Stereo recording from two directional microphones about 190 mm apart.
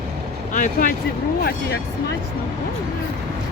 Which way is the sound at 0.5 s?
45° left (ahead or behind).